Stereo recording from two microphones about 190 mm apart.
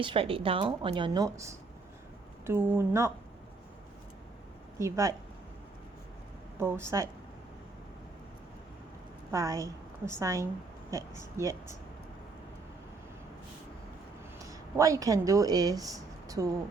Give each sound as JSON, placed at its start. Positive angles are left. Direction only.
{"t": 0.0, "sound": "a woman's voice", "side_deg": -30}
{"t": 4.8, "sound": "a woman's voice", "side_deg": -15}
{"t": 6.6, "sound": "a woman's voice", "side_deg": -15}
{"t": 9.3, "sound": "a woman's voice", "side_deg": -15}
{"t": 14.8, "sound": "a woman's voice", "side_deg": -15}